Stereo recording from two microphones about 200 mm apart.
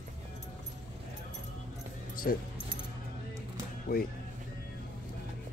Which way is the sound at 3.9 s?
50° left (ahead or behind).